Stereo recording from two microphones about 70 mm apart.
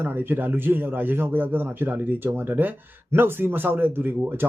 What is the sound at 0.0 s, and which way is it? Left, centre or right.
A man's voice, right.